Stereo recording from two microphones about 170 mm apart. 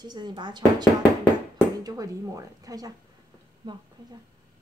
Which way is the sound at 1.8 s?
20° right (ahead or behind).